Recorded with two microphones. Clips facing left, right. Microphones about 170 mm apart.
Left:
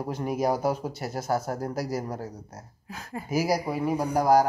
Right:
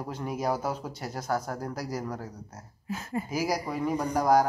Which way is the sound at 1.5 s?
35° left (ahead or behind).